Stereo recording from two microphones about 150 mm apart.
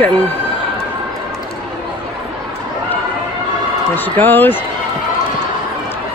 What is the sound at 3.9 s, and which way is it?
Speech, 10° left (ahead or behind).